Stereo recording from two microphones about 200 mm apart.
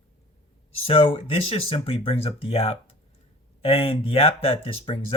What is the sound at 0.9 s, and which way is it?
Speech, 30° left (ahead or behind).